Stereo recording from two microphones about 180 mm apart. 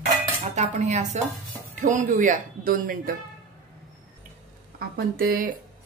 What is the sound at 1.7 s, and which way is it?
A woman's voice, 45° right (ahead or behind).